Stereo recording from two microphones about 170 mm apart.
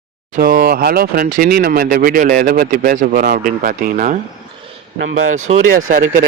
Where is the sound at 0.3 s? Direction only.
60° right (ahead or behind).